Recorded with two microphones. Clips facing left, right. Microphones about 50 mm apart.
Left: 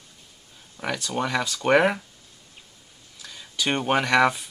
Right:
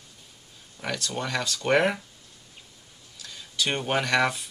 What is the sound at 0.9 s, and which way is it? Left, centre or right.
Speech, centre.